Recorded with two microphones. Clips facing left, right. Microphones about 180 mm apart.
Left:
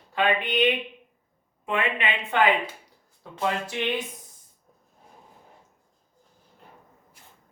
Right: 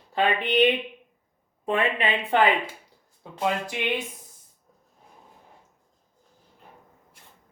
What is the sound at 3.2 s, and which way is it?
Speech, 15° right (ahead or behind).